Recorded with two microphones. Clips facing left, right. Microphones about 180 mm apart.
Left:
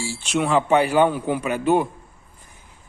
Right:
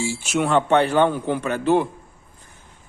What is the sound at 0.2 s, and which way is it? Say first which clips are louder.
A man's voice: left 1 dB; centre (ahead or behind).